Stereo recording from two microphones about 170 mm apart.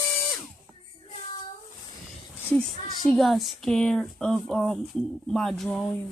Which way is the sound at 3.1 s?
Centre (ahead or behind).